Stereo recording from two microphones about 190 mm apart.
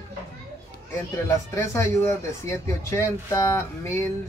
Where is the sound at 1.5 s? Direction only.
15° left (ahead or behind).